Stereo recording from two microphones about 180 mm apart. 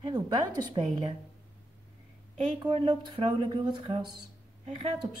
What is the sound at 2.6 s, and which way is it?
Speech, 25° right (ahead or behind).